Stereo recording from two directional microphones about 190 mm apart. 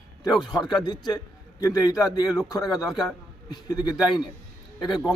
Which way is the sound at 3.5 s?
20° left (ahead or behind).